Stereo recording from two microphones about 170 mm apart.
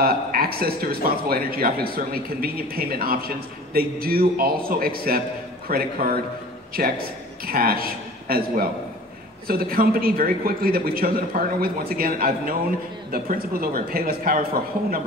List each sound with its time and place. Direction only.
0.0 s a man's voice: 60° right (ahead or behind)